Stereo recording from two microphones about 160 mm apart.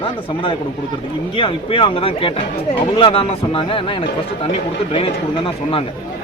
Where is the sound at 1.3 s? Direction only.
30° left (ahead or behind).